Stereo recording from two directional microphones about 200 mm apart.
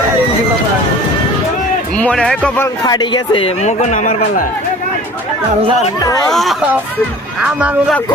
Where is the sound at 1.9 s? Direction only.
5° left (ahead or behind); by 4.5 s 40° left (ahead or behind).